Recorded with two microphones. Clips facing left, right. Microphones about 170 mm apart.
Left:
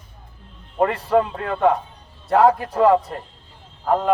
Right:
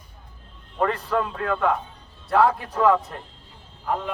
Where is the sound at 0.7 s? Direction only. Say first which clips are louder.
Left 5 dB; 25° left (ahead or behind).